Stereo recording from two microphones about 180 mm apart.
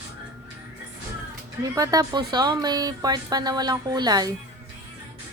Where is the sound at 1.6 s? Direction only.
20° right (ahead or behind).